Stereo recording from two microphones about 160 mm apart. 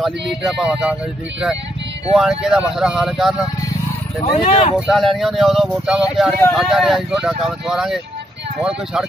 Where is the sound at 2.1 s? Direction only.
5° right (ahead or behind).